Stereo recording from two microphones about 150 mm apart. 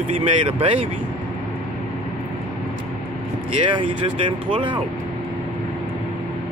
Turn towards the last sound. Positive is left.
turn(degrees=-35)  # may be behind; listen again after turning